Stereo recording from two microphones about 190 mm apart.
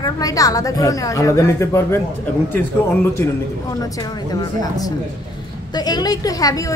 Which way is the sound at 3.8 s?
20° left (ahead or behind).